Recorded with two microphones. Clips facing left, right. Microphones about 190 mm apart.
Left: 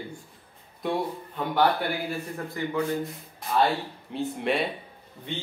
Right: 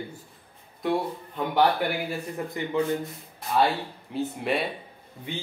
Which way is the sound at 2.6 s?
20° right (ahead or behind).